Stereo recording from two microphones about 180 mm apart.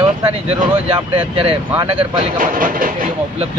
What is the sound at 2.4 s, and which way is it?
Speech, 50° right (ahead or behind).